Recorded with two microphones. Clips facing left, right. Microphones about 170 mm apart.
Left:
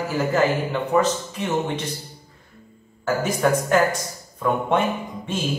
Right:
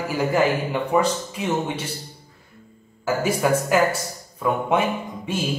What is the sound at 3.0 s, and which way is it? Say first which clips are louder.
Speech: even; 5° right (ahead or behind).